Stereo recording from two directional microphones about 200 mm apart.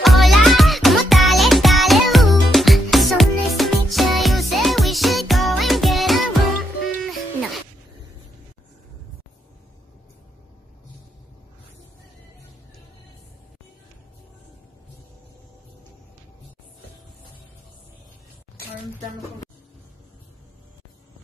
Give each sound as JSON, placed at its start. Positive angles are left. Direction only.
{"t": 0.0, "sound": "music", "side_deg": 0}